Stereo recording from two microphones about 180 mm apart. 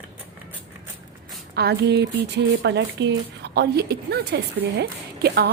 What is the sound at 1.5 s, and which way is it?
A woman's voice, 65° right (ahead or behind).